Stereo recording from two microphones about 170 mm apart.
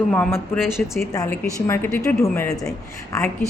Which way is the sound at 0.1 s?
10° left (ahead or behind).